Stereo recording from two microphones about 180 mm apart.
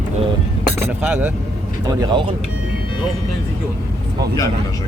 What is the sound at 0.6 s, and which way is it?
Chink, 10° right (ahead or behind).